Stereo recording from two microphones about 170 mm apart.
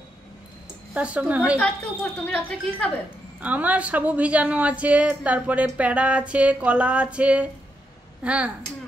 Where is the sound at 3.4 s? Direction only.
10° right (ahead or behind).